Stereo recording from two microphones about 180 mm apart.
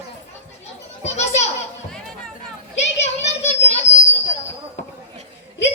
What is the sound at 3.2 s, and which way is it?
Children playing, 35° left (ahead or behind).